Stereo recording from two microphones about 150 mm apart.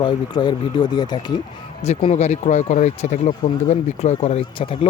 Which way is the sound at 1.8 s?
45° left (ahead or behind).